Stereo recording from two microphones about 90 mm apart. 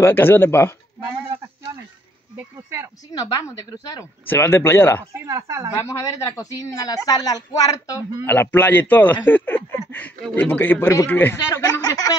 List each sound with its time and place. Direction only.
0.0 s speech: 25° left (ahead or behind)
3.1 s speech: 40° left (ahead or behind)
4.3 s speech: 25° left (ahead or behind)
5.1 s a woman's voice: 35° right (ahead or behind)
5.8 s speech: 30° left (ahead or behind)
8.3 s speech: 25° left (ahead or behind)